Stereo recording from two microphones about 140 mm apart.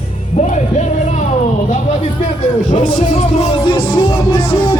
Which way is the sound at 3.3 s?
40° left (ahead or behind).